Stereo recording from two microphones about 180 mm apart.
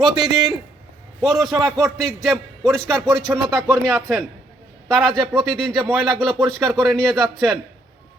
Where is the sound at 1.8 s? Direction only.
Centre (ahead or behind).